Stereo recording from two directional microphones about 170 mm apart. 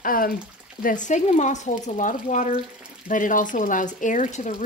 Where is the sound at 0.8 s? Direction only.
45° left (ahead or behind).